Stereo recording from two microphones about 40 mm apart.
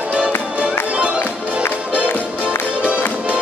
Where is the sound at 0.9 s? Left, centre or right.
Right.